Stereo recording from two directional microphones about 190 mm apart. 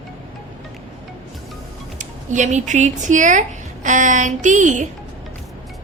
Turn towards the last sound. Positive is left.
turn(degrees=-40)  # may be behind; listen again after turning